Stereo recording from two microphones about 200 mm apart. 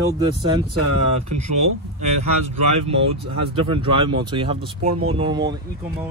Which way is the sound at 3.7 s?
25° right (ahead or behind).